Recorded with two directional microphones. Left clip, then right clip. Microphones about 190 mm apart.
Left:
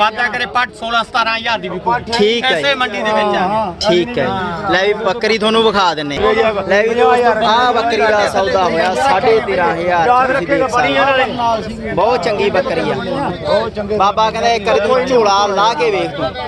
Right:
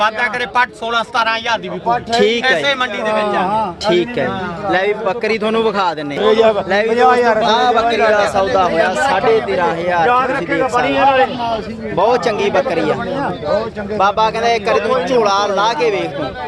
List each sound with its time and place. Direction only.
0.0 s speech: 10° right (ahead or behind)
2.1 s speech: centre (ahead or behind)
3.1 s speech: 5° left (ahead or behind)
6.2 s a man's voice: 55° right (ahead or behind)
6.7 s speech: centre (ahead or behind)
6.9 s a man's voice: 45° right (ahead or behind)
7.4 s speech: centre (ahead or behind)
10.1 s a man's voice: 25° right (ahead or behind)
11.9 s speech: 10° right (ahead or behind)
14.0 s speech: 5° right (ahead or behind)